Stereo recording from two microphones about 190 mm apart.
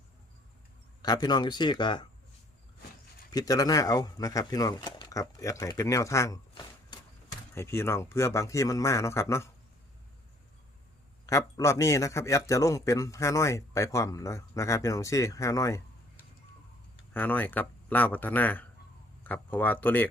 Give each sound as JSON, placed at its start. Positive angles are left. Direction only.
{"t": 1.0, "sound": "speech", "side_deg": 20}
{"t": 3.3, "sound": "a man's voice", "side_deg": 20}
{"t": 11.3, "sound": "a man's voice", "side_deg": 15}